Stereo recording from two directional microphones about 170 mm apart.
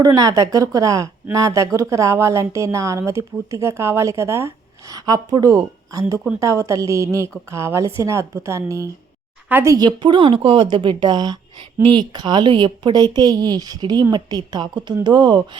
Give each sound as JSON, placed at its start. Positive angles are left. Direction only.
{"t": 0.0, "sound": "a woman's voice", "side_deg": -20}
{"t": 9.7, "sound": "a woman's voice", "side_deg": -25}